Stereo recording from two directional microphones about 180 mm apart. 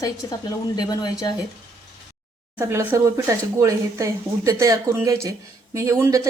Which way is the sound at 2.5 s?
10° right (ahead or behind).